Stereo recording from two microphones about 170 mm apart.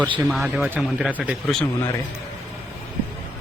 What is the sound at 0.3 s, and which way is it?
Speech, centre (ahead or behind).